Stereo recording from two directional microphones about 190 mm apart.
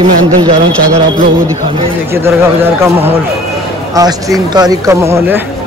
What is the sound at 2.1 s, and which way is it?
Speech, 15° right (ahead or behind).